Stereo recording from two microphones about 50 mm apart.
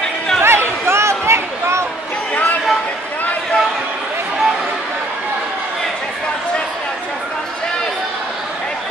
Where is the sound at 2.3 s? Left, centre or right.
Left.